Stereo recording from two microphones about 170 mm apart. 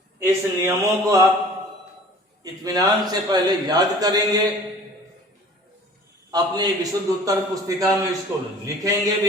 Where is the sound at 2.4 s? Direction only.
20° right (ahead or behind).